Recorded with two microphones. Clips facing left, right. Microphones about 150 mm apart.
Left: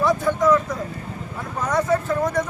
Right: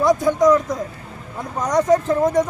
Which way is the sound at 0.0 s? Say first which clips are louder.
Right 4 dB; 15° right (ahead or behind).